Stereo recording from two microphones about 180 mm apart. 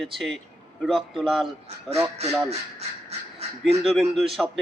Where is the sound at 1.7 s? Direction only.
35° right (ahead or behind).